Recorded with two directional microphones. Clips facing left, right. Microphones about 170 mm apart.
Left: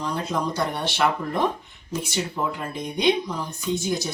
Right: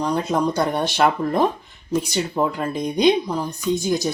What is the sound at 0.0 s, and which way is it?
Speech, 50° right (ahead or behind).